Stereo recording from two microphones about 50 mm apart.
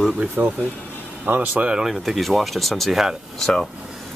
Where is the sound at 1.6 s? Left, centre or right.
Centre.